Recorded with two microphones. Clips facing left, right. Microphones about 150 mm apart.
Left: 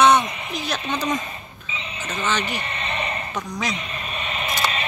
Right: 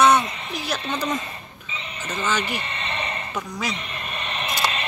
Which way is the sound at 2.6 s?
10° left (ahead or behind).